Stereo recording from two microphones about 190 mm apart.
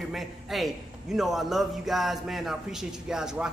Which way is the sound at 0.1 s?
Centre (ahead or behind).